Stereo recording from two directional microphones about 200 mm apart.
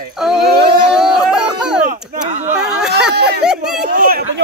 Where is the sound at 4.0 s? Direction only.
45° right (ahead or behind).